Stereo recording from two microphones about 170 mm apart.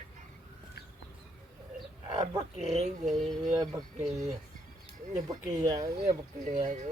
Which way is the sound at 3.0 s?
Centre (ahead or behind).